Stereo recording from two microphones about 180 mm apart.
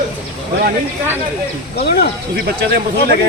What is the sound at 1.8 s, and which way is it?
Speech, 65° left (ahead or behind).